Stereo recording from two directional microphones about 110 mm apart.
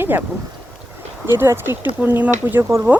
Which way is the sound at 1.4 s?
20° right (ahead or behind).